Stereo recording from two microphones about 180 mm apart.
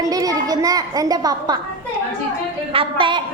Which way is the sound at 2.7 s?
30° right (ahead or behind).